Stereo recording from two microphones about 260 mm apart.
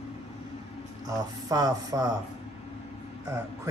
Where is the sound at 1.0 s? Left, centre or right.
Centre.